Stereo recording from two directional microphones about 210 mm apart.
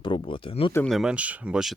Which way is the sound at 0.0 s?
25° left (ahead or behind).